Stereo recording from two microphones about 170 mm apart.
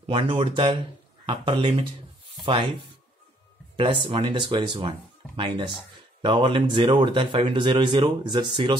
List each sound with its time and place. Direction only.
0.0 s speech: 30° right (ahead or behind)